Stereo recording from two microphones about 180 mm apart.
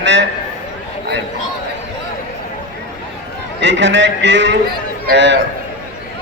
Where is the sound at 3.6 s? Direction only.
85° right.